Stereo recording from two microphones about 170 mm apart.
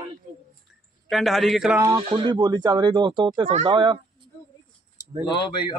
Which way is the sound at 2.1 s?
25° right (ahead or behind).